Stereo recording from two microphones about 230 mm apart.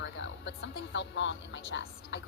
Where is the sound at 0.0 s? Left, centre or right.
Left.